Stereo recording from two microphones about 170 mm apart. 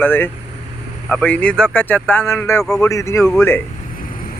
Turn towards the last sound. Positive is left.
turn(degrees=15)  # may be behind; listen again after turning